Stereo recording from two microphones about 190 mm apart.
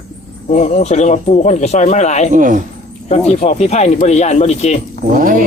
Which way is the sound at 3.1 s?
35° left (ahead or behind).